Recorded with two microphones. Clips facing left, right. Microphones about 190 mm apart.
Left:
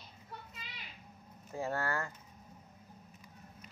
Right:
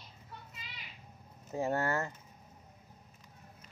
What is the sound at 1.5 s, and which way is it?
Speech, 20° right (ahead or behind).